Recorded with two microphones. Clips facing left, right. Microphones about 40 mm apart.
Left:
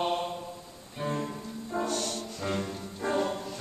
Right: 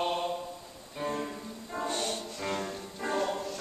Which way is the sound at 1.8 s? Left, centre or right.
Right.